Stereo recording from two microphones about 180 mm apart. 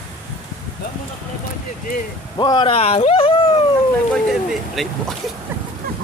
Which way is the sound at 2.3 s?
25° left (ahead or behind).